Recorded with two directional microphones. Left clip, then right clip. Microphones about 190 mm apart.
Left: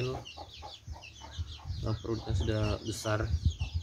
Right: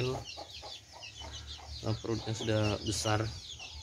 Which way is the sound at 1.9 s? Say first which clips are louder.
Even; 5° right (ahead or behind).